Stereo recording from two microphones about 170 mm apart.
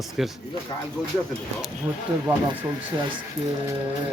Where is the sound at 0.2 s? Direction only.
Centre (ahead or behind).